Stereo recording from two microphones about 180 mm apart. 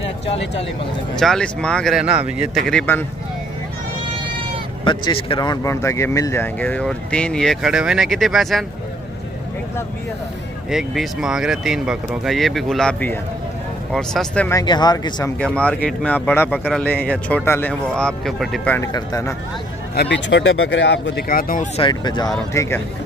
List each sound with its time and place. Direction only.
1.1 s speech: 5° left (ahead or behind)
4.8 s speech: 30° left (ahead or behind); by 8.6 s centre (ahead or behind)
10.7 s speech: 5° right (ahead or behind)
14.5 s speech: 20° left (ahead or behind)
15.3 s speech: 5° left (ahead or behind)
16.5 s speech: 5° right (ahead or behind)
16.8 s speech: 10° left (ahead or behind)
18.9 s speech: 20° left (ahead or behind)
20.0 s speech: 80° left; by 21.6 s 50° left (ahead or behind)
21.7 s speech: 25° left (ahead or behind)